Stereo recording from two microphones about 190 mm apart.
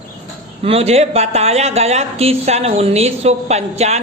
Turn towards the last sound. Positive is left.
turn(degrees=-35)  # may be behind; listen again after turning